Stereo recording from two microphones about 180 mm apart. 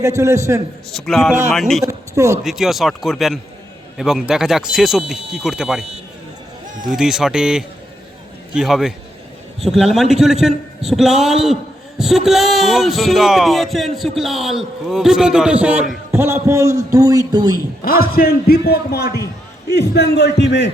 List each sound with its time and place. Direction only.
0.0 s a man's voice: 15° right (ahead or behind)
0.9 s speech: centre (ahead or behind)
1.8 s a man's voice: 15° right (ahead or behind)
2.4 s speech: centre (ahead or behind)
6.8 s a man's voice: centre (ahead or behind); by 17.6 s 20° right (ahead or behind)
17.8 s a man's voice: 55° left (ahead or behind); by 20.7 s 75° left (ahead or behind)